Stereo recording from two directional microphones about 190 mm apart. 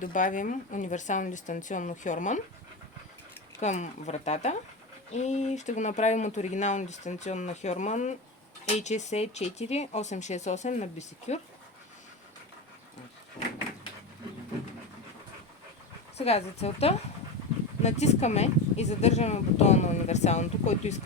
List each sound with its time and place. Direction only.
0.0 s speech: 40° left (ahead or behind)
3.6 s speech: 40° left (ahead or behind)
13.4 s a sound: 25° left (ahead or behind)
16.1 s speech: 35° left (ahead or behind)